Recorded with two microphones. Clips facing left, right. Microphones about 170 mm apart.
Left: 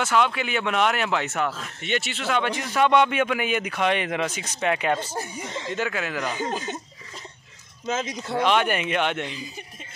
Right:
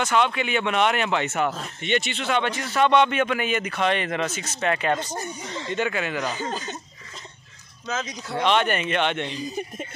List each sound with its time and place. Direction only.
0.0 s a man's voice: 5° left (ahead or behind)
8.0 s a man's voice: 5° left (ahead or behind)